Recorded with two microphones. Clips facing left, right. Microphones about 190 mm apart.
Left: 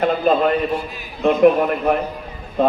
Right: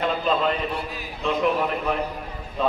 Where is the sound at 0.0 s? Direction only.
50° left (ahead or behind).